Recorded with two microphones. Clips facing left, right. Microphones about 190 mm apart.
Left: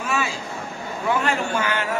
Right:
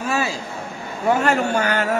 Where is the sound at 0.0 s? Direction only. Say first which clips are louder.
Right 3 dB; 35° right (ahead or behind).